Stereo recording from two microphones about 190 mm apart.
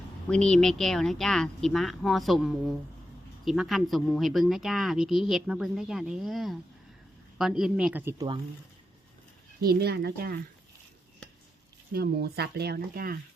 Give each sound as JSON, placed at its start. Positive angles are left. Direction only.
{"t": 0.3, "sound": "speech", "side_deg": 5}
{"t": 9.6, "sound": "speech", "side_deg": -55}
{"t": 11.9, "sound": "speech", "side_deg": -55}